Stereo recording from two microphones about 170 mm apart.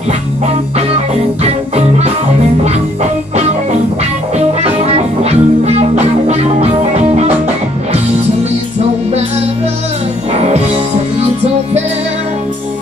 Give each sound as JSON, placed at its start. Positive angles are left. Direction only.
{"t": 4.8, "sound": "music", "side_deg": -40}